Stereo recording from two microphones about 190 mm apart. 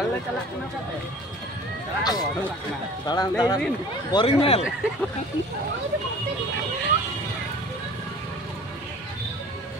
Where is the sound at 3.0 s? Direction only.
20° left (ahead or behind).